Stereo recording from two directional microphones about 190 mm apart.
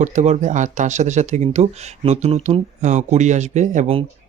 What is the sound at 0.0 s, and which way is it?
Speech, 40° right (ahead or behind).